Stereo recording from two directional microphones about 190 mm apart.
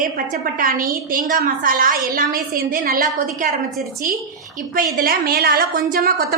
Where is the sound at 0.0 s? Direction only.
45° right (ahead or behind).